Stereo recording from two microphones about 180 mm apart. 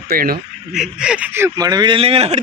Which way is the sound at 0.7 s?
5° right (ahead or behind).